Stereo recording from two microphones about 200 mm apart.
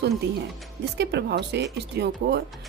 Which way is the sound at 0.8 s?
60° right (ahead or behind).